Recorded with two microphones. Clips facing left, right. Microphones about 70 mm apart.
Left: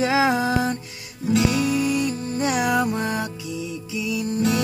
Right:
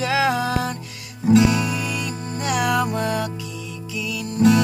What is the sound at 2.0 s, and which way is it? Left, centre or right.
Music, left.